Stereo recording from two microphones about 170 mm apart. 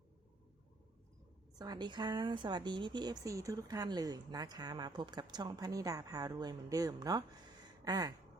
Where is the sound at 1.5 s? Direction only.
25° right (ahead or behind).